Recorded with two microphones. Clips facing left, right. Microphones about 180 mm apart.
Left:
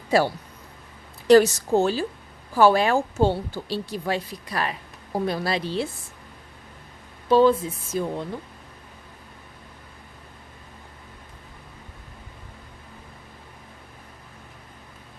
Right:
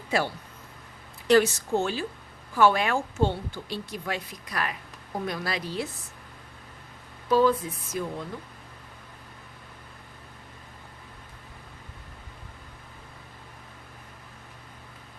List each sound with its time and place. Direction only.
0.1 s speech: 35° left (ahead or behind)
1.3 s speech: 40° left (ahead or behind)
7.3 s speech: 30° left (ahead or behind)